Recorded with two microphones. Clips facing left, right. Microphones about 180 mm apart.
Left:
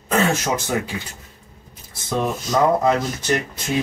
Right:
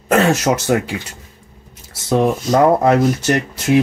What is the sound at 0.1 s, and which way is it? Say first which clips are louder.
Speech: right 6 dB; 75° right (ahead or behind).